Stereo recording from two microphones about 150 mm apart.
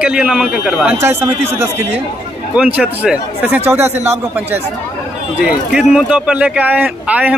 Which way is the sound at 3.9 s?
45° right (ahead or behind).